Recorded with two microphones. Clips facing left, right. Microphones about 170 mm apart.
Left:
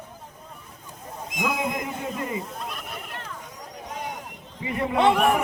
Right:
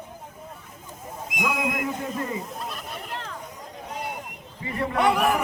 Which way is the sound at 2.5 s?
Centre (ahead or behind).